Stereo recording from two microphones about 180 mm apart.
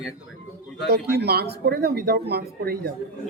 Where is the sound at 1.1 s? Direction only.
65° right (ahead or behind).